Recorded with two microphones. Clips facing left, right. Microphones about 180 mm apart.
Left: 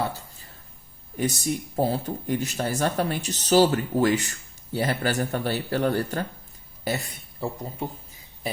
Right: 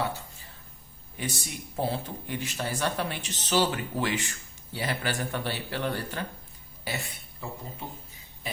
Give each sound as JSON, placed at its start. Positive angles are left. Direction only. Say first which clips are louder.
{"t": 1.1, "sound": "speech", "louder": "left 10 dB", "side_deg": 40}